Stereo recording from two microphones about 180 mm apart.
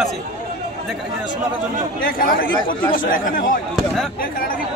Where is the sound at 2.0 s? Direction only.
50° left (ahead or behind).